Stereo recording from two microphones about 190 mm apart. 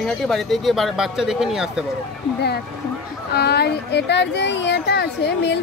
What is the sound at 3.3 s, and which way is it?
Speech, 60° left (ahead or behind).